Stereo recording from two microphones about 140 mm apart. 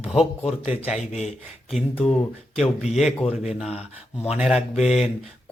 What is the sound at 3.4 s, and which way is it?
Speech, 5° right (ahead or behind).